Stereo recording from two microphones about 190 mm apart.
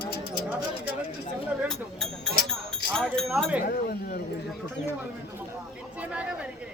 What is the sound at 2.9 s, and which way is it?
Speech, 5° left (ahead or behind).